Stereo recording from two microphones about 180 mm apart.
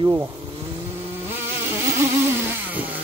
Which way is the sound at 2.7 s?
10° right (ahead or behind).